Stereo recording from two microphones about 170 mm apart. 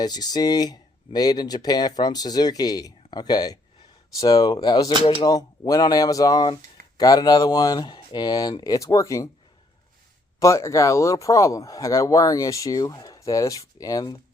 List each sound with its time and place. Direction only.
0.0 s speech: 25° left (ahead or behind)
10.4 s speech: 15° left (ahead or behind)